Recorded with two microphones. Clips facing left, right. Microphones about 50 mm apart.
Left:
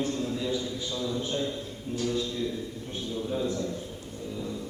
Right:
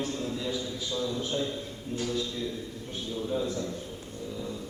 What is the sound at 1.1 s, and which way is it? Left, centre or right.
Speech, centre.